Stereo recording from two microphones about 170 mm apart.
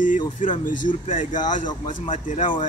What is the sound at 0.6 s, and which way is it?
Speech, 50° left (ahead or behind).